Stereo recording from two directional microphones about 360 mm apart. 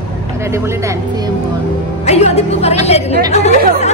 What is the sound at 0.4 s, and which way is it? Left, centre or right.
Speech, centre.